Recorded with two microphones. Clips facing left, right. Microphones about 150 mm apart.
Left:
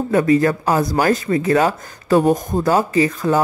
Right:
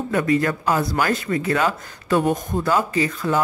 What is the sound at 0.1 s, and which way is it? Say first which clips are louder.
Speech: left 5 dB; 35° left (ahead or behind).